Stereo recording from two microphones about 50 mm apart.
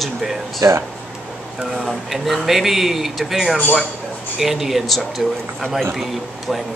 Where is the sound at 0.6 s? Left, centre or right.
Right.